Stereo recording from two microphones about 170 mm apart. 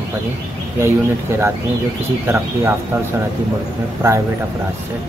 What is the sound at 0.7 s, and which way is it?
Speech, 15° right (ahead or behind).